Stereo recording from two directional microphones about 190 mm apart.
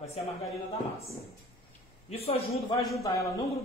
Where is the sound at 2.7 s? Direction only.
Centre (ahead or behind).